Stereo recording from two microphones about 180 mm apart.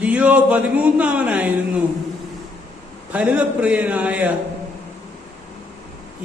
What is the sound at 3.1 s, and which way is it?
Speech, 5° right (ahead or behind).